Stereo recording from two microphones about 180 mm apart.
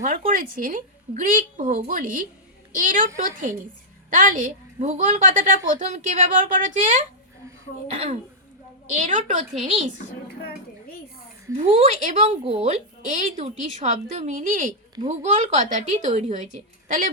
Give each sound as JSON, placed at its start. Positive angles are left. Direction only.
{"t": 0.0, "sound": "a woman's voice", "side_deg": -45}
{"t": 8.9, "sound": "a woman's voice", "side_deg": -45}
{"t": 11.5, "sound": "a woman's voice", "side_deg": -40}